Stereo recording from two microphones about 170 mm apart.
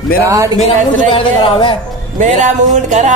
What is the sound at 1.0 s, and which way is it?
Speech, 30° left (ahead or behind).